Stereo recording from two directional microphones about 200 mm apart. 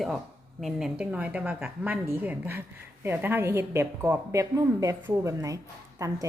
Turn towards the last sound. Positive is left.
turn(degrees=-15)  # may be behind; listen again after turning